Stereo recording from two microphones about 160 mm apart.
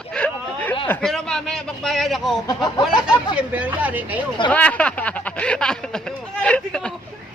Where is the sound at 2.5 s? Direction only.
25° left (ahead or behind).